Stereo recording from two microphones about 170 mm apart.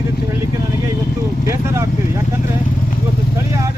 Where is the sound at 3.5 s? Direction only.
20° right (ahead or behind).